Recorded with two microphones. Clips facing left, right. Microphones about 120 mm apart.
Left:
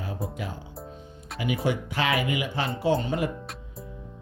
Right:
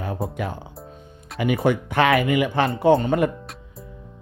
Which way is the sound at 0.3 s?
55° right (ahead or behind).